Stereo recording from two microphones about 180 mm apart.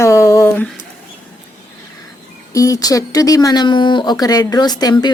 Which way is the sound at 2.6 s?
20° left (ahead or behind).